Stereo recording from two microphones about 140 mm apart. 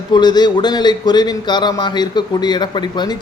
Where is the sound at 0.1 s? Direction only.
30° left (ahead or behind).